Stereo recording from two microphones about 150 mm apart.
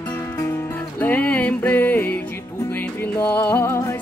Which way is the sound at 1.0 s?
10° left (ahead or behind).